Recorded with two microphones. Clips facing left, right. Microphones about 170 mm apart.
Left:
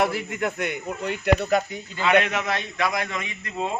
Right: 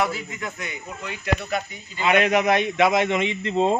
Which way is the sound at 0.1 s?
60° left (ahead or behind).